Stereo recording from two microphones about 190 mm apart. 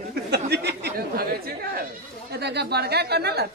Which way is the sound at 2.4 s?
60° right (ahead or behind).